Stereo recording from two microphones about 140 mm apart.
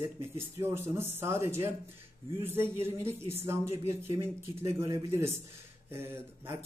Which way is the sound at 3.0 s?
45° right (ahead or behind).